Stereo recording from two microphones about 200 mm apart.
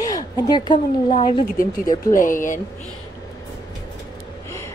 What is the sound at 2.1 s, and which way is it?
Speech, 40° left (ahead or behind).